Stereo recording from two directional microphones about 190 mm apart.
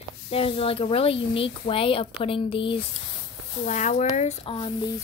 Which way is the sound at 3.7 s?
40° left (ahead or behind).